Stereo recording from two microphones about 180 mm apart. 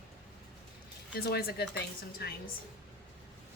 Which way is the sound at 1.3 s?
65° left (ahead or behind).